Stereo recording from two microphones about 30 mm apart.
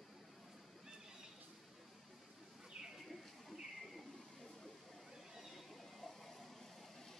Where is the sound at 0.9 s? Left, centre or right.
Right.